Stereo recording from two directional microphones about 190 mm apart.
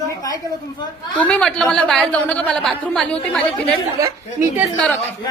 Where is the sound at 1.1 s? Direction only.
5° left (ahead or behind).